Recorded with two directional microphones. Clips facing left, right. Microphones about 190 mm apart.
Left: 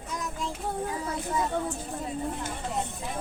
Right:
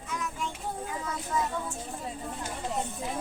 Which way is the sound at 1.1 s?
35° left (ahead or behind).